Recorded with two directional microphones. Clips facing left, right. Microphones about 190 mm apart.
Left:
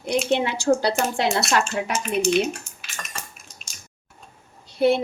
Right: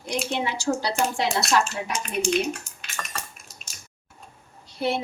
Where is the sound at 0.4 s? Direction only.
55° left (ahead or behind).